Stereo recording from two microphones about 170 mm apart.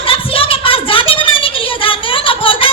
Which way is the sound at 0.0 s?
30° left (ahead or behind).